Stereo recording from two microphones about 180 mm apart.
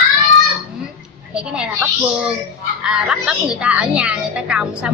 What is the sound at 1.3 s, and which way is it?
Speech, 5° right (ahead or behind).